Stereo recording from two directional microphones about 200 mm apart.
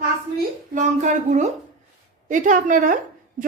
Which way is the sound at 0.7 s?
40° right (ahead or behind).